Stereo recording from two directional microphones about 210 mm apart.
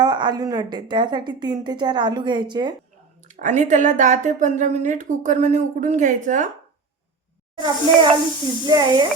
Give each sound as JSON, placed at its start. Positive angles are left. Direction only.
{"t": 0.0, "sound": "a woman's voice", "side_deg": -20}
{"t": 3.2, "sound": "a woman's voice", "side_deg": -35}
{"t": 7.6, "sound": "a woman's voice", "side_deg": -20}